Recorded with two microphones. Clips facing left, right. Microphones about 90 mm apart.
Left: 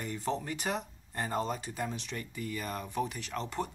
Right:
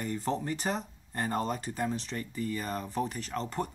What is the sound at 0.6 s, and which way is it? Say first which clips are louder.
Speech: right 1 dB; 15° right (ahead or behind).